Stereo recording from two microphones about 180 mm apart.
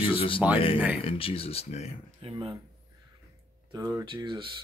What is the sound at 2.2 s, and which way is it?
Speech, 25° right (ahead or behind).